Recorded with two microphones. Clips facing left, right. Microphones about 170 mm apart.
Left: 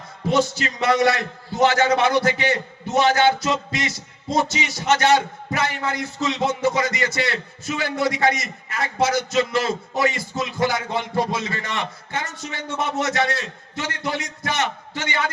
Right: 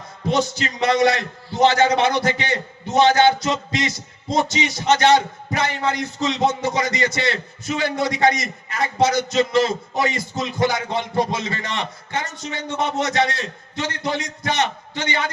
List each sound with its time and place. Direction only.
0.3 s a man's voice: 20° right (ahead or behind)